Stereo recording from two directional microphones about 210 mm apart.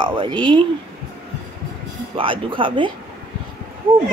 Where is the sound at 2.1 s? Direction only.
25° right (ahead or behind).